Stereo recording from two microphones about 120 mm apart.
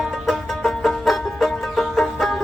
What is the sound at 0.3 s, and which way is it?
Music, centre (ahead or behind).